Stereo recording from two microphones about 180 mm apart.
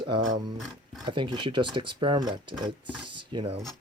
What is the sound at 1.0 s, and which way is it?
Speech, 25° right (ahead or behind).